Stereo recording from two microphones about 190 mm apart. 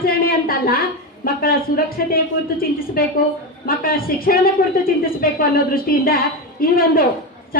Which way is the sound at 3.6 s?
50° left (ahead or behind).